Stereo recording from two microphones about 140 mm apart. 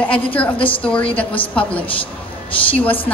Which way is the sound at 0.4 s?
10° left (ahead or behind).